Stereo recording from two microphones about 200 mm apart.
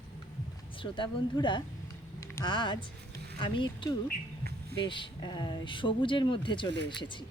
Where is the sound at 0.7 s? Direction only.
25° left (ahead or behind).